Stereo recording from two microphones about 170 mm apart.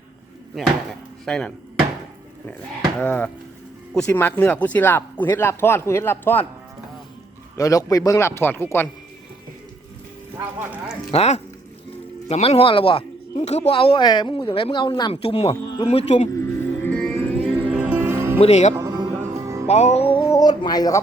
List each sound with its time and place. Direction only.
1.2 s speech: 5° left (ahead or behind)
3.0 s speech: 10° left (ahead or behind)
7.5 s speech: 20° left (ahead or behind)
11.1 s speech: 35° left (ahead or behind)
16.3 s music: 15° left (ahead or behind)
17.6 s music: 10° right (ahead or behind)
18.3 s speech: 40° left (ahead or behind)
18.7 s music: 20° right (ahead or behind)
19.6 s music: 40° left (ahead or behind)
20.3 s a sound: 25° left (ahead or behind)